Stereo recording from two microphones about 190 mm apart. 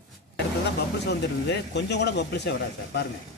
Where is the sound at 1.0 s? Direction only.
65° left (ahead or behind).